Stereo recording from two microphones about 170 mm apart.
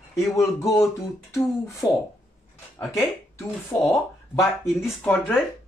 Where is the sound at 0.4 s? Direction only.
20° left (ahead or behind).